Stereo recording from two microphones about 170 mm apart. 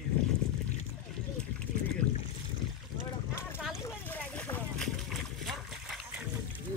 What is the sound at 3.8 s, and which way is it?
Splash, 10° left (ahead or behind).